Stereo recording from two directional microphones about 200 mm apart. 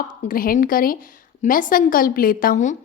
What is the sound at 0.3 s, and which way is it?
A woman's voice, 45° left (ahead or behind).